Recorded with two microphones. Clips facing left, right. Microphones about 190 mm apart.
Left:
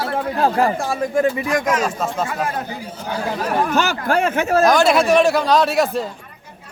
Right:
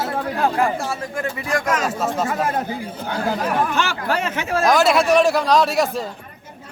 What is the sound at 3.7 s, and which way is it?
Speech, 40° left (ahead or behind).